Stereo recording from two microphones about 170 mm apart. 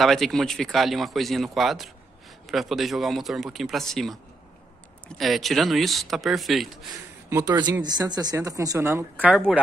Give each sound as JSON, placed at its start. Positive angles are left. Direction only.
{"t": 0.0, "sound": "speech", "side_deg": 0}
{"t": 7.2, "sound": "a man's voice", "side_deg": -15}